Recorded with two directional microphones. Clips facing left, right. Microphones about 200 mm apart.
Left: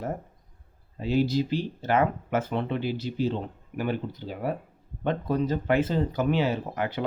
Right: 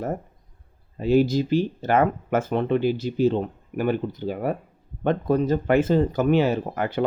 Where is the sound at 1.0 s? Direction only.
45° right (ahead or behind).